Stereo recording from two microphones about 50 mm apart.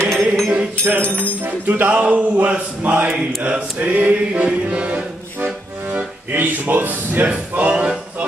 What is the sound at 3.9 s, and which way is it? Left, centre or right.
Music, right.